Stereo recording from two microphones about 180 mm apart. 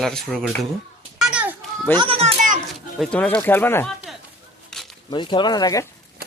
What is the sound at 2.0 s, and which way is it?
Speech, 30° right (ahead or behind).